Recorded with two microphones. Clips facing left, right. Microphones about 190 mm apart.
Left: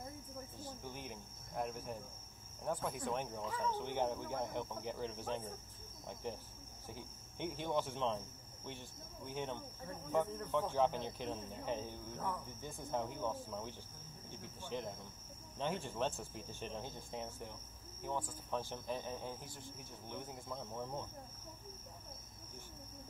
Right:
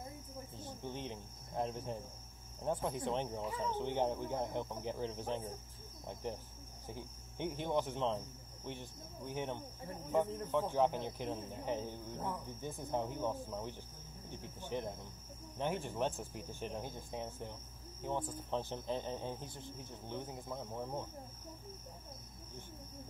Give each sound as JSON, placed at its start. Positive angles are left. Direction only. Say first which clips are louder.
{"t": 0.6, "sound": "speech", "louder": "right 6 dB", "side_deg": -25}